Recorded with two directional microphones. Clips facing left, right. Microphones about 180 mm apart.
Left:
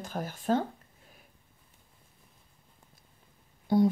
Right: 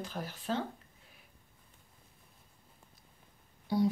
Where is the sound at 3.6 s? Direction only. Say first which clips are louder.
Left 6 dB; 50° left (ahead or behind).